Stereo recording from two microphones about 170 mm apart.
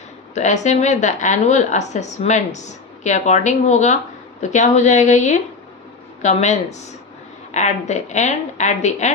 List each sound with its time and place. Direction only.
0.3 s a woman's voice: 45° left (ahead or behind)